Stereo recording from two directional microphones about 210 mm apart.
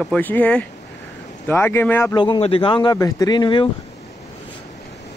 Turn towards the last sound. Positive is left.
turn(degrees=20)  # may be behind; listen again after turning